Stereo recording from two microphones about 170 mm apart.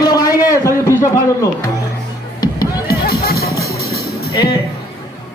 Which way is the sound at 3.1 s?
65° left (ahead or behind).